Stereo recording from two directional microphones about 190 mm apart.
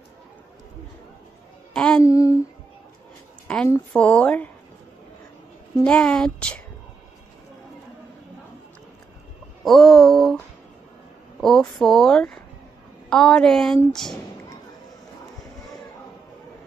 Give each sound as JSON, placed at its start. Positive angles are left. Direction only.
{"t": 1.7, "sound": "a sound", "side_deg": 5}
{"t": 2.0, "sound": "speech", "side_deg": 15}
{"t": 3.4, "sound": "speech", "side_deg": 10}
{"t": 5.9, "sound": "speech", "side_deg": 5}
{"t": 9.7, "sound": "a sound", "side_deg": 0}
{"t": 11.4, "sound": "speech", "side_deg": 0}